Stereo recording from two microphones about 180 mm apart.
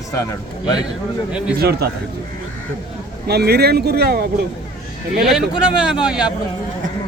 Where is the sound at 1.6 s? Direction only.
60° right (ahead or behind).